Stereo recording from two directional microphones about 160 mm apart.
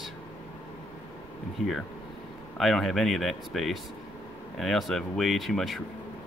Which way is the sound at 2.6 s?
Centre (ahead or behind).